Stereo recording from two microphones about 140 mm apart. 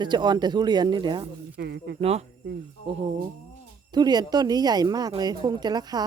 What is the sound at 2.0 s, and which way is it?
Speech, 45° right (ahead or behind).